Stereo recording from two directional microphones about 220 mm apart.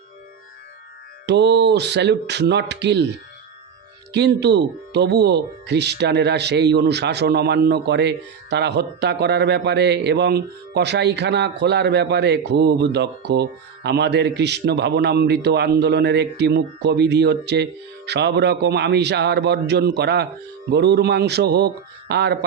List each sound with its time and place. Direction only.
1.3 s speech: 50° right (ahead or behind)
4.1 s speech: 50° right (ahead or behind)